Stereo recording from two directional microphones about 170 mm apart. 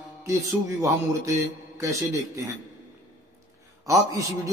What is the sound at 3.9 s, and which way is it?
Speech, 20° right (ahead or behind).